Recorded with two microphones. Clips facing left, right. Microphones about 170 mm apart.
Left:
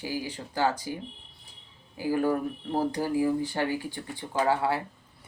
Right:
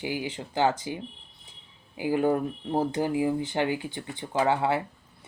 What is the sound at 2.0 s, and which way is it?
Speech, 20° right (ahead or behind).